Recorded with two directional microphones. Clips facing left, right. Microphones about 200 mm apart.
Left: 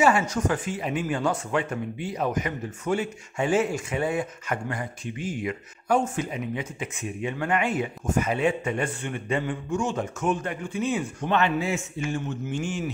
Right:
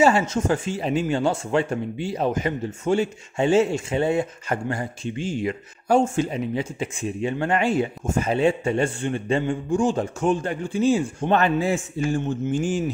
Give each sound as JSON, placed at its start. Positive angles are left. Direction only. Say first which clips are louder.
{"t": 0.0, "sound": "speech", "louder": "right 3 dB", "side_deg": -25}